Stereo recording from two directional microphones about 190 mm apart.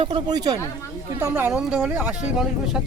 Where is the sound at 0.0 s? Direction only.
25° right (ahead or behind).